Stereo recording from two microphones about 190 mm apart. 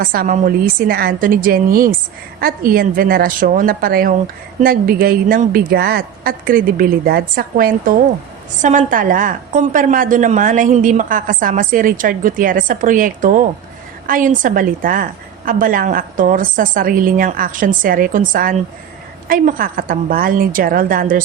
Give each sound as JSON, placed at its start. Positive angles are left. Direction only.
{"t": 0.0, "sound": "a woman's voice", "side_deg": -50}